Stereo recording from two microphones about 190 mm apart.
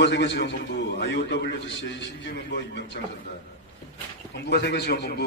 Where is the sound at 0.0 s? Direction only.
70° left (ahead or behind).